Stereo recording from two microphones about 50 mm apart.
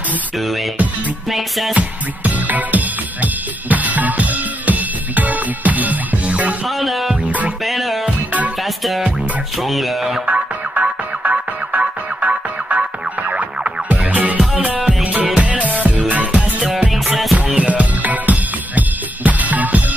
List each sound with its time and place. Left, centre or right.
1.7 s music: right
6.8 s music: centre
7.1 s music: right
7.6 s music: centre
9.6 s speech: centre
10.2 s music: right
16.9 s music: centre
17.6 s music: right